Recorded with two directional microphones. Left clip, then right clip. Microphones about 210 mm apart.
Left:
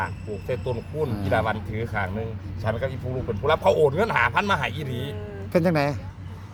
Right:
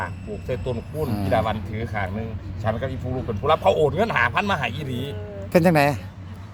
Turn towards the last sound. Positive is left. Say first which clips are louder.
# right 5 dB
turn(degrees=-25)  # may be behind; listen again after turning